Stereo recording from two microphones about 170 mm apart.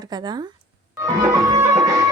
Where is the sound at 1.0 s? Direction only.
20° right (ahead or behind).